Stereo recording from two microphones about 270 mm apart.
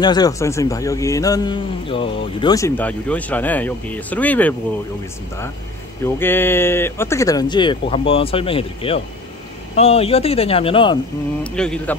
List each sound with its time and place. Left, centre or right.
0.0 s a man's voice: centre
6.0 s a man's voice: centre
11.4 s speech: centre